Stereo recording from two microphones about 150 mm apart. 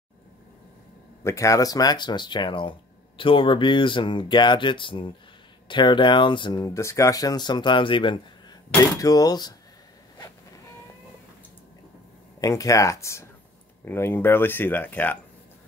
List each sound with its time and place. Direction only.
1.2 s speech: 20° left (ahead or behind)
12.4 s speech: 20° left (ahead or behind)